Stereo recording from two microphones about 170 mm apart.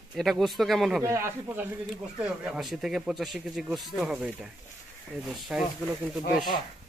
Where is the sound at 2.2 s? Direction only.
Centre (ahead or behind).